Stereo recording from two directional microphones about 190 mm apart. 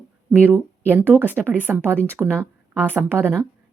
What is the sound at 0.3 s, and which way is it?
Speech, 10° right (ahead or behind).